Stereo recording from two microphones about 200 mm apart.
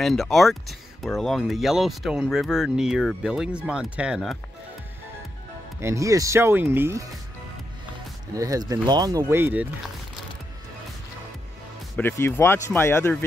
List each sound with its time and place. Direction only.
0.0 s speech: centre (ahead or behind)
5.8 s speech: 15° right (ahead or behind)
8.4 s speech: 15° right (ahead or behind)
12.0 s speech: 10° left (ahead or behind)